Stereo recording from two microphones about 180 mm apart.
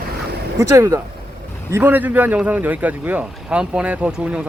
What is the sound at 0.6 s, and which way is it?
Speech, 15° right (ahead or behind).